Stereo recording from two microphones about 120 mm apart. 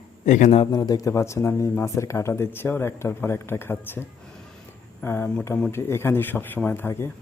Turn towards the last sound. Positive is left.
turn(degrees=20)  # may be behind; listen again after turning